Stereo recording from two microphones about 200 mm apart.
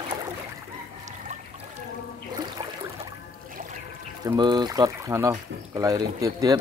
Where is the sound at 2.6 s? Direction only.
20° right (ahead or behind).